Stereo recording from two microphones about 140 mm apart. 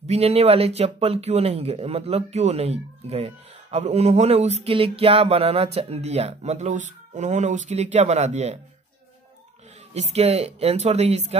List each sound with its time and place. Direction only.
0.0 s speech: 45° right (ahead or behind)
9.9 s speech: 50° right (ahead or behind)